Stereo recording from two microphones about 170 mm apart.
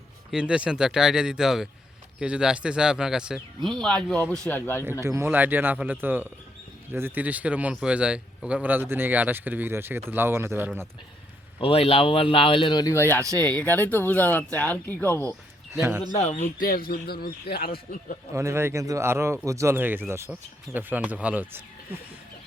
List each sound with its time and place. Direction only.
0.3 s speech: 5° right (ahead or behind); by 4.9 s 15° left (ahead or behind)
4.9 s speech: 15° right (ahead or behind)
11.6 s speech: 35° left (ahead or behind); by 15.4 s 15° left (ahead or behind)
15.7 s a man's voice: 15° right (ahead or behind)
16.1 s speech: 45° left (ahead or behind); by 18.2 s 65° left (ahead or behind)
18.3 s speech: 15° right (ahead or behind)